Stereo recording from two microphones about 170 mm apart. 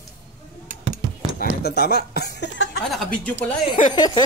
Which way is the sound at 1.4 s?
70° left (ahead or behind).